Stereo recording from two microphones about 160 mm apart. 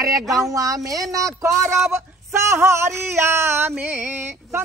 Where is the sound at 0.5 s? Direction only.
20° right (ahead or behind).